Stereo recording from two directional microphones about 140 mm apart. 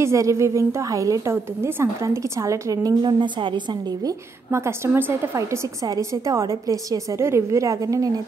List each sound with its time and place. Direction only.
0.0 s a woman's voice: 20° right (ahead or behind)
4.5 s a woman's voice: 20° right (ahead or behind)